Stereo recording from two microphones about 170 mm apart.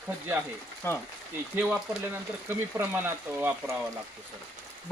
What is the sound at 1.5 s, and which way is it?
Speech, 10° right (ahead or behind).